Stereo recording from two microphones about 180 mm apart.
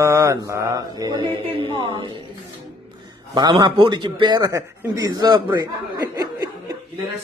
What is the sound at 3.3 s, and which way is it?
A man's voice, 25° right (ahead or behind).